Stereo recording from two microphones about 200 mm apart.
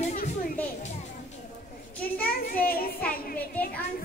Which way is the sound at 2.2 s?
50° left (ahead or behind).